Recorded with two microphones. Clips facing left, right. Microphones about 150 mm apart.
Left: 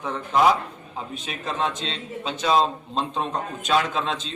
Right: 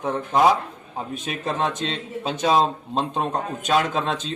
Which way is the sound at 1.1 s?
50° right (ahead or behind).